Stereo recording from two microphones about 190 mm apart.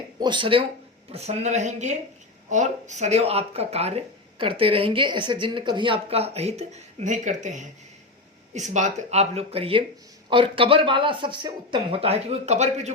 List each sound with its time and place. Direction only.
0.2 s speech: 25° right (ahead or behind)